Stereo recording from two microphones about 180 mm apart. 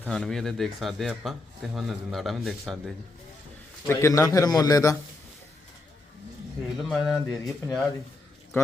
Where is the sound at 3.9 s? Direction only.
15° left (ahead or behind).